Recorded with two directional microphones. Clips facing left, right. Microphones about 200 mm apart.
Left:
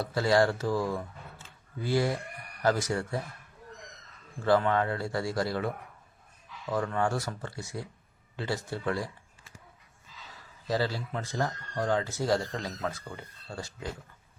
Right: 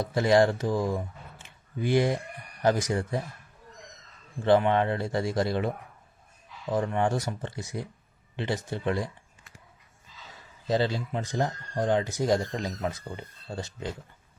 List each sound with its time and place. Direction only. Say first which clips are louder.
0.0 s speech: right 3 dB; 20° right (ahead or behind)
4.4 s speech: right 3 dB; 20° right (ahead or behind)
10.7 s speech: right 4 dB; 20° right (ahead or behind)